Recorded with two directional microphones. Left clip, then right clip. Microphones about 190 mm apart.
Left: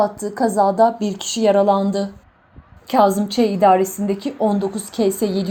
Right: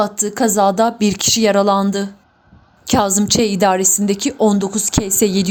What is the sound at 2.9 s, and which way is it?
A woman's voice, 55° right (ahead or behind).